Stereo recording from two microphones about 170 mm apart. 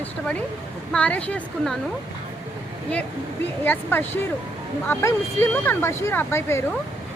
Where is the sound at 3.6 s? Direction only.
10° left (ahead or behind).